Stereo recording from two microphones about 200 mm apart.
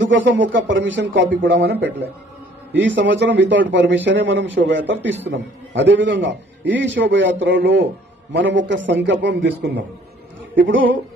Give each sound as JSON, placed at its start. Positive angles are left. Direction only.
{"t": 0.0, "sound": "a man's voice", "side_deg": -65}
{"t": 2.9, "sound": "a man's voice", "side_deg": -65}